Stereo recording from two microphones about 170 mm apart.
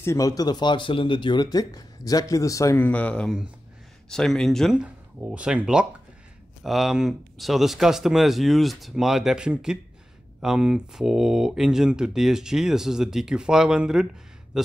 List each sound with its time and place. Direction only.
0.0 s speech: 20° left (ahead or behind); by 14.0 s 5° right (ahead or behind)